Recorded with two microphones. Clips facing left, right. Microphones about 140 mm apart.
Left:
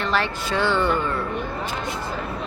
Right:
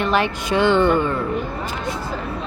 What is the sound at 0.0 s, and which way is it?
Speech, 15° right (ahead or behind).